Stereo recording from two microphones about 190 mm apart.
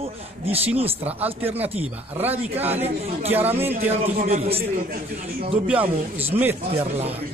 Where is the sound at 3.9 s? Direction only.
35° right (ahead or behind).